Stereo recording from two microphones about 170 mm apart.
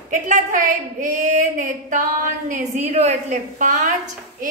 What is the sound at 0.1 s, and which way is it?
Speech, 50° right (ahead or behind).